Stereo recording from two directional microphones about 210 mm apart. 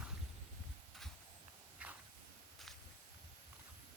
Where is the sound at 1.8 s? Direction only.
5° right (ahead or behind).